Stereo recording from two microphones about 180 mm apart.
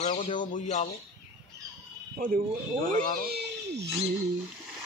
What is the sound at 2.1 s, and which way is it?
Speech, 50° right (ahead or behind).